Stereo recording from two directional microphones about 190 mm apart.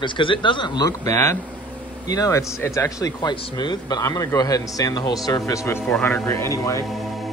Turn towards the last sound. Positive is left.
turn(degrees=15)  # may be behind; listen again after turning